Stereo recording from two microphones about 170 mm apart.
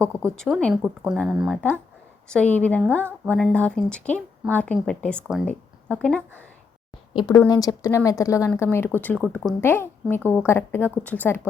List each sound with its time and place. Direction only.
0.0 s speech: 5° left (ahead or behind)
7.1 s a woman's voice: 30° left (ahead or behind); by 9.6 s centre (ahead or behind)
9.6 s speech: 15° left (ahead or behind)